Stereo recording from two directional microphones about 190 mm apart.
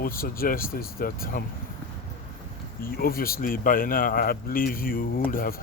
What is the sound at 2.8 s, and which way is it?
A man's voice, 50° left (ahead or behind).